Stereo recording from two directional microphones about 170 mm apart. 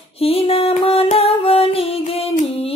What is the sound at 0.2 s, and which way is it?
Music, 35° left (ahead or behind).